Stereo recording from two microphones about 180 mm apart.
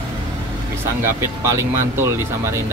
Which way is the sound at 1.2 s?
15° right (ahead or behind).